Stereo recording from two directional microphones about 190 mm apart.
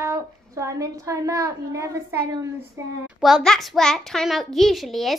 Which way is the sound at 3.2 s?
Centre (ahead or behind).